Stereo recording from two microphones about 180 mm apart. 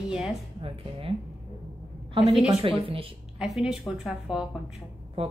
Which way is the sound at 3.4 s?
Centre (ahead or behind).